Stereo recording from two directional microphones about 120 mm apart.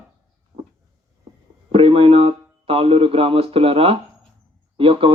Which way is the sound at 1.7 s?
55° right (ahead or behind).